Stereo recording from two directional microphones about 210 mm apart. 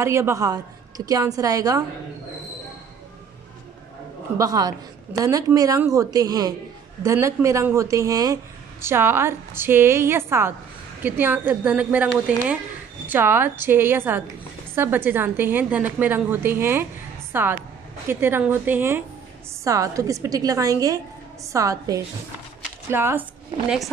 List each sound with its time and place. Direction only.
0.0 s a woman's voice: 15° right (ahead or behind)
4.4 s a woman's voice: 15° right (ahead or behind)